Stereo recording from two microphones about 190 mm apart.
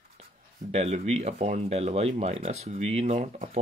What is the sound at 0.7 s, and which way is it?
Speech, 35° right (ahead or behind).